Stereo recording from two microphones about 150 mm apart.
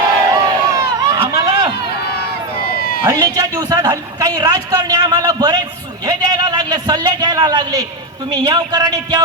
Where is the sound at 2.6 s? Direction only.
90° left.